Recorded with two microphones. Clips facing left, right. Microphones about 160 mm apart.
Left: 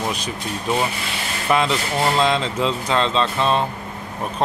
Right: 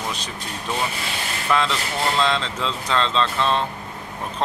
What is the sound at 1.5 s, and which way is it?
Speech, 15° left (ahead or behind).